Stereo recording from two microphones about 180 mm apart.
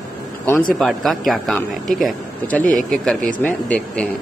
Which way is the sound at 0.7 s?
Centre (ahead or behind).